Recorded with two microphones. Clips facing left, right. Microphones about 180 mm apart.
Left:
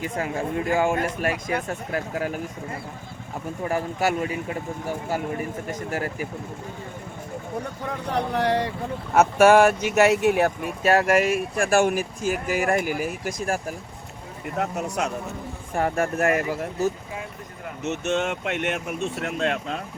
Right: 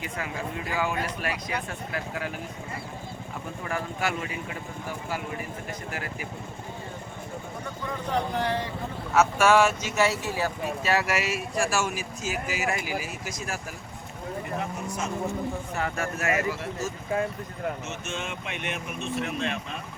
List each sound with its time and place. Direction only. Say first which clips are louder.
0.0 s speech: left 6 dB; 45° left (ahead or behind)
3.6 s speech: left 6 dB; 40° left (ahead or behind)
5.9 s speech: left 9 dB; 40° left (ahead or behind)
8.1 s speech: left 4 dB; 70° left (ahead or behind)
9.1 s speech: left 5 dB; 55° left (ahead or behind)
14.6 s speech: left 6 dB; 70° left (ahead or behind)
15.7 s speech: left 6 dB; 50° left (ahead or behind)
17.8 s speech: left 10 dB; 70° left (ahead or behind)